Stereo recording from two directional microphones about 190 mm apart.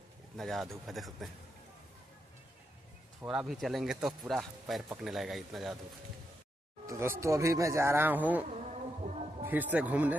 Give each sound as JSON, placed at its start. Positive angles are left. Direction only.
{"t": 0.4, "sound": "speech", "side_deg": 0}
{"t": 3.2, "sound": "speech", "side_deg": -5}
{"t": 6.9, "sound": "speech", "side_deg": -15}
{"t": 8.5, "sound": "insect", "side_deg": -40}
{"t": 9.4, "sound": "speech", "side_deg": -10}